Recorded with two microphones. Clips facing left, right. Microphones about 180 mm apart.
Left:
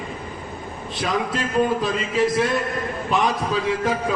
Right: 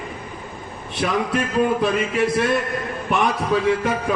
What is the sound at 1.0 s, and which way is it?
A man's voice, 60° right (ahead or behind).